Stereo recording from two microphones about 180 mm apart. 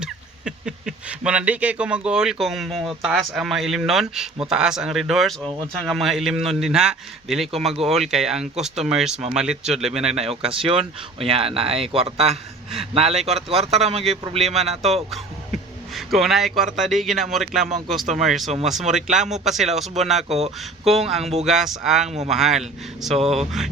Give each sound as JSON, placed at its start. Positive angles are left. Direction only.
{"t": 0.0, "sound": "a man's voice", "side_deg": -5}
{"t": 7.7, "sound": "speech", "side_deg": -35}
{"t": 7.9, "sound": "a man's voice", "side_deg": 0}
{"t": 10.2, "sound": "speech", "side_deg": -30}
{"t": 16.0, "sound": "a man's voice", "side_deg": 0}
{"t": 20.2, "sound": "speech", "side_deg": -35}
{"t": 21.4, "sound": "a man's voice", "side_deg": 0}
{"t": 23.1, "sound": "speech", "side_deg": -35}